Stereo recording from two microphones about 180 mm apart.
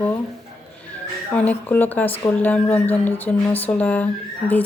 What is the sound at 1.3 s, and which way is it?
A woman's voice, 10° left (ahead or behind).